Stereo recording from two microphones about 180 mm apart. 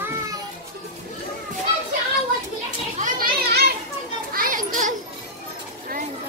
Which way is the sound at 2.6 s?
45° right (ahead or behind).